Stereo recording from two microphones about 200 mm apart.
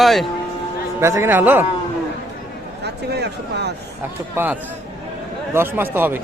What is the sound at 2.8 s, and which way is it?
Speech, 60° right (ahead or behind).